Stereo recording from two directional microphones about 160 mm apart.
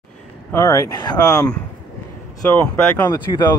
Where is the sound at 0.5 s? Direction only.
15° left (ahead or behind).